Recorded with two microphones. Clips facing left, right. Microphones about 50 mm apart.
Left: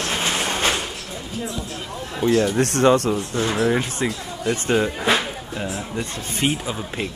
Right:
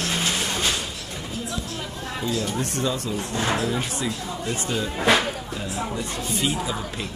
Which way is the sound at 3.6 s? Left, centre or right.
Left.